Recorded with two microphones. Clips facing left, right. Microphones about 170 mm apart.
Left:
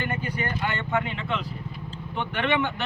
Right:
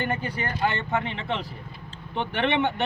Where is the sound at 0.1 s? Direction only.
30° right (ahead or behind).